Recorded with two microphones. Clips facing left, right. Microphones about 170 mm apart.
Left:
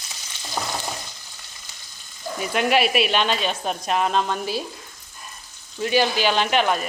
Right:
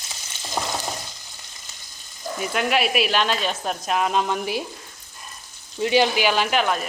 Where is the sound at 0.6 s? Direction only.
20° right (ahead or behind).